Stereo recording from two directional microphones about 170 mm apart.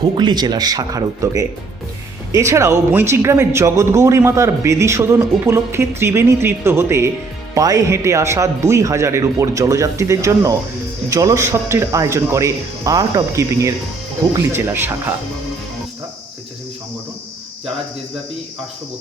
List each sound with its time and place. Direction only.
0.0 s speech: 25° right (ahead or behind)